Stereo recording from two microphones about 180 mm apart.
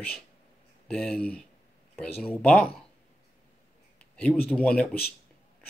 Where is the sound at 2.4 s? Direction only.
Centre (ahead or behind).